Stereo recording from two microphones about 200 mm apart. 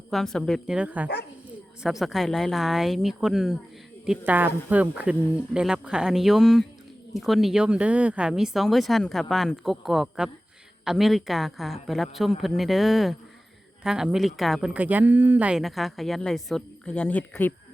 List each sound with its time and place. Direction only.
0.1 s speech: centre (ahead or behind)